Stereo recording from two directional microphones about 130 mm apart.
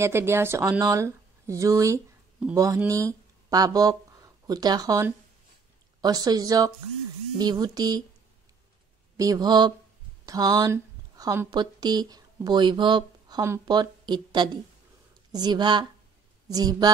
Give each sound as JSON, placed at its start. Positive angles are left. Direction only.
{"t": 0.0, "sound": "speech", "side_deg": -20}
{"t": 9.1, "sound": "speech", "side_deg": -25}